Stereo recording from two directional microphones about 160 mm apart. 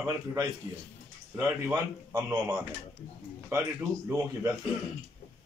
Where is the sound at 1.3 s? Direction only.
15° right (ahead or behind).